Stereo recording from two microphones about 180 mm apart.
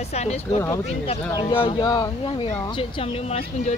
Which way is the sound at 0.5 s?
15° left (ahead or behind).